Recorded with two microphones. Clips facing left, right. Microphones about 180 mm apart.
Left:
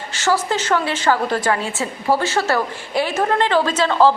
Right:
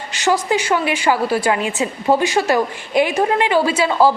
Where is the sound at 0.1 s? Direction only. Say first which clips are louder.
Right 2 dB; 15° right (ahead or behind).